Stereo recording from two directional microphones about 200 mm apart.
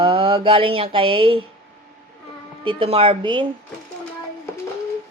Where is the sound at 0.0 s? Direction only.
25° right (ahead or behind).